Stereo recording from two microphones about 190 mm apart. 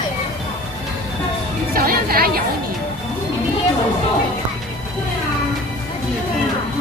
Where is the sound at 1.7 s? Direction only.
50° right (ahead or behind).